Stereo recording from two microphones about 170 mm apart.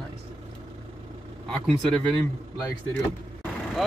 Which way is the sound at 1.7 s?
Centre (ahead or behind).